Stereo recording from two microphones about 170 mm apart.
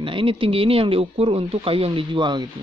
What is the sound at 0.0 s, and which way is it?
Speech, 30° right (ahead or behind).